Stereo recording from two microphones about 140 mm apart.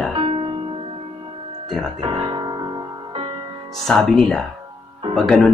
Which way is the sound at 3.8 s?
5° left (ahead or behind).